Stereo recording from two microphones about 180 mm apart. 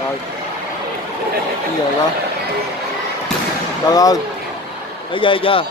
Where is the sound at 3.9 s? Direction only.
20° left (ahead or behind).